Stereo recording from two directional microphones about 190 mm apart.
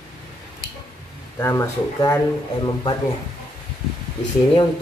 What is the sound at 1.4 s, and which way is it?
Speech, 15° left (ahead or behind).